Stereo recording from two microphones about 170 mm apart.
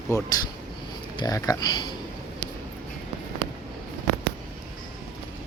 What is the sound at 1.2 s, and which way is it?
Speech, 20° left (ahead or behind).